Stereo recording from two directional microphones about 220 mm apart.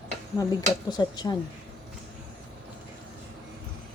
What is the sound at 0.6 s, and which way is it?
Speech, 15° left (ahead or behind).